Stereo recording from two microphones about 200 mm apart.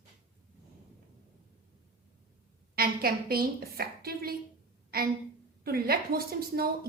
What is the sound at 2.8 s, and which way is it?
A woman's voice, 50° right (ahead or behind).